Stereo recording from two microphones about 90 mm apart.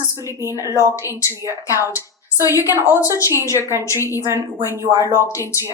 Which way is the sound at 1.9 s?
35° left (ahead or behind).